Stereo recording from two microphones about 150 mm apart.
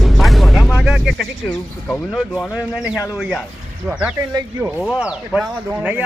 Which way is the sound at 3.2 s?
Centre (ahead or behind).